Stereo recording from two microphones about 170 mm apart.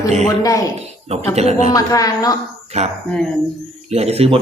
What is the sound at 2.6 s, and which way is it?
Speech, 40° right (ahead or behind).